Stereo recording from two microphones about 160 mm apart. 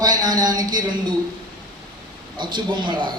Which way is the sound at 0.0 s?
25° right (ahead or behind).